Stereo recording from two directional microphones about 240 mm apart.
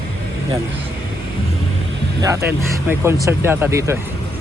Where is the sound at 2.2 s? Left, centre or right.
Centre.